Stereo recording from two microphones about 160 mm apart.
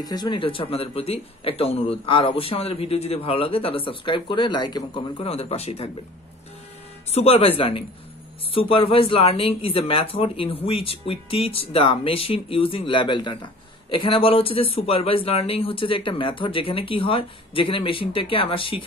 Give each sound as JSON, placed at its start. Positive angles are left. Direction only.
{"t": 0.0, "sound": "speech", "side_deg": 25}
{"t": 7.1, "sound": "speech", "side_deg": 40}